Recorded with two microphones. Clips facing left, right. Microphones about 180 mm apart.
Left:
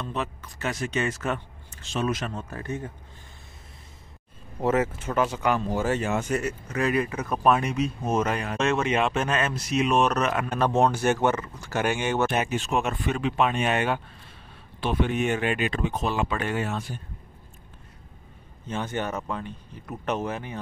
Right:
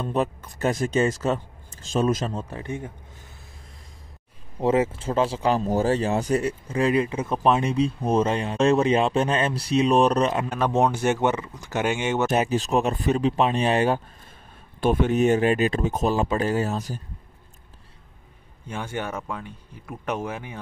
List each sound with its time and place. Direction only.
0.0 s speech: 40° right (ahead or behind)
2.5 s speech: 15° right (ahead or behind)
4.6 s speech: 25° right (ahead or behind)
10.5 s speech: 15° right (ahead or behind)
12.3 s speech: 35° right (ahead or behind)
18.7 s speech: 10° right (ahead or behind)